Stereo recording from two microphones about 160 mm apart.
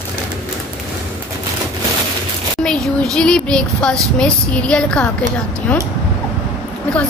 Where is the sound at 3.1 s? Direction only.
5° left (ahead or behind).